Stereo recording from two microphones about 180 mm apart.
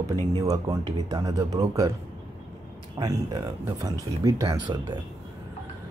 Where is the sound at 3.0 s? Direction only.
20° right (ahead or behind).